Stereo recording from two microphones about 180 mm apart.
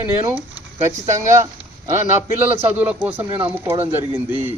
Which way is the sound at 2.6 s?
10° right (ahead or behind).